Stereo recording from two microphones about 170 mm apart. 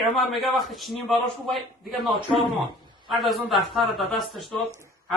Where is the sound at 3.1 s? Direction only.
Centre (ahead or behind).